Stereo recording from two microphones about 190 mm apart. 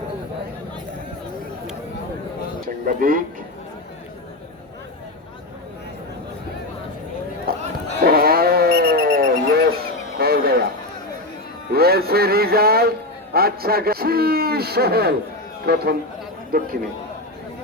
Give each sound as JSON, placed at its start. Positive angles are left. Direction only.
{"t": 2.8, "sound": "speech", "side_deg": -45}
{"t": 7.5, "sound": "a sound", "side_deg": -50}
{"t": 8.0, "sound": "cat", "side_deg": -55}
{"t": 11.7, "sound": "music", "side_deg": -55}
{"t": 13.3, "sound": "a man's voice", "side_deg": -55}